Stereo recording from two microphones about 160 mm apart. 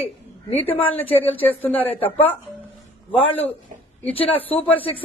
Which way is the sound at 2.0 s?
35° left (ahead or behind).